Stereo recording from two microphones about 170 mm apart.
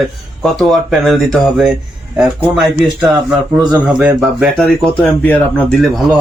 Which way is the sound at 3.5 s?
25° right (ahead or behind).